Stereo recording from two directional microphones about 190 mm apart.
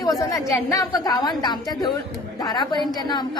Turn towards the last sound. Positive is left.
turn(degrees=20)  # may be behind; listen again after turning